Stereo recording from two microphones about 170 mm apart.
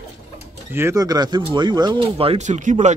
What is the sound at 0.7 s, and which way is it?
Speech, 15° right (ahead or behind).